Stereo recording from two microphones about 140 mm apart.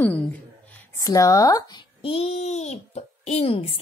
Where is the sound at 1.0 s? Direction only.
25° left (ahead or behind); by 3.8 s 45° left (ahead or behind).